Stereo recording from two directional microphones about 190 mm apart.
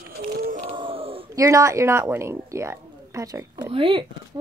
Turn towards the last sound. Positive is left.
turn(degrees=-25)  # may be behind; listen again after turning